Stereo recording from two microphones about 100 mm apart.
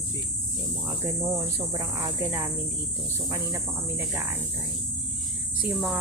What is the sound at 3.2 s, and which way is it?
Speech, 35° right (ahead or behind).